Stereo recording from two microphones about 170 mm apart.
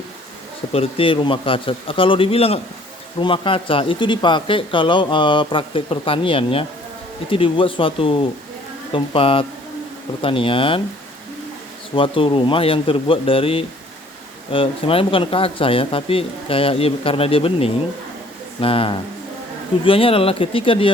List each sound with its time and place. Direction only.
0.7 s speech: 35° left (ahead or behind)
11.9 s speech: 30° left (ahead or behind)